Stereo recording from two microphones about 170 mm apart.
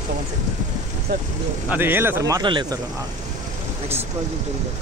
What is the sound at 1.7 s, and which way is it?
A man's voice, 15° right (ahead or behind).